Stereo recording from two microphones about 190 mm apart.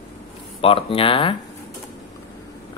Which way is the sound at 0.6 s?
30° left (ahead or behind).